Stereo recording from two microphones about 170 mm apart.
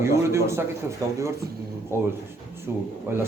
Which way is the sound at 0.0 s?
15° right (ahead or behind).